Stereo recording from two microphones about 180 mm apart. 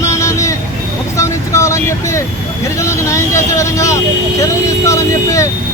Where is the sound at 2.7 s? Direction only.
15° left (ahead or behind).